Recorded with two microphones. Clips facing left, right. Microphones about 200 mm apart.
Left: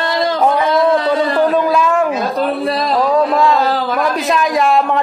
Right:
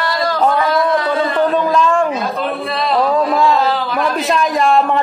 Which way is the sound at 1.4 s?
10° left (ahead or behind).